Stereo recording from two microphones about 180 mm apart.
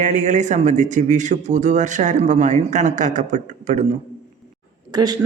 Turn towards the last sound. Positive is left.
turn(degrees=-20)  # may be behind; listen again after turning